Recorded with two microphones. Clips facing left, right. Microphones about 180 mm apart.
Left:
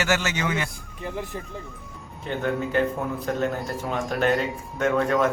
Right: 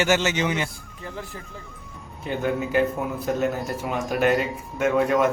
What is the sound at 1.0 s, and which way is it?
Speech, 15° left (ahead or behind).